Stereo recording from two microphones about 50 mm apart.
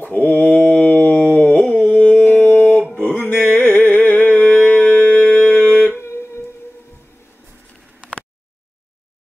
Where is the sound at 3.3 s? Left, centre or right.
Left.